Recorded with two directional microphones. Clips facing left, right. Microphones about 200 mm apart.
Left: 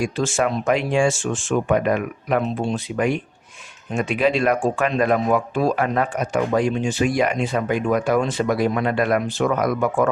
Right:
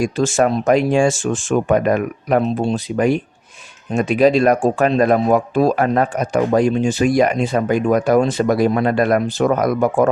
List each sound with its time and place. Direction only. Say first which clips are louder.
0.0 s speech: right 5 dB; 45° right (ahead or behind)